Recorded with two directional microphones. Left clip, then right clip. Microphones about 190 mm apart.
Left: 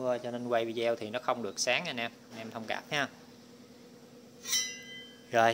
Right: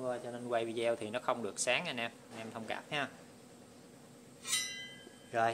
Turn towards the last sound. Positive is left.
turn(degrees=40)  # may be behind; listen again after turning